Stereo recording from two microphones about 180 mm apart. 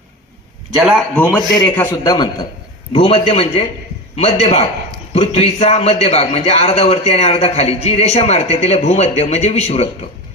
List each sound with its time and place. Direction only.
0.9 s a man's voice: centre (ahead or behind)
1.6 s a man's voice: 10° left (ahead or behind); by 9.9 s 35° left (ahead or behind)